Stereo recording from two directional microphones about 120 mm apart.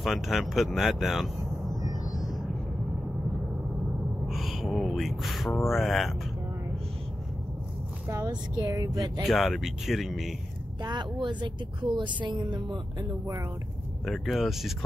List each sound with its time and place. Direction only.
0.0 s speech: centre (ahead or behind)
4.3 s speech: centre (ahead or behind)
8.3 s speech: 30° right (ahead or behind)
9.2 s speech: centre (ahead or behind)
10.8 s speech: 40° right (ahead or behind)
14.0 s speech: centre (ahead or behind)